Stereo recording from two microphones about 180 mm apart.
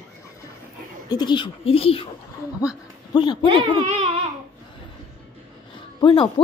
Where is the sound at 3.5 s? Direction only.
30° right (ahead or behind).